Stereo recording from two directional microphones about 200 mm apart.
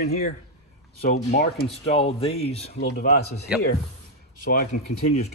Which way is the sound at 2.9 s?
45° left (ahead or behind).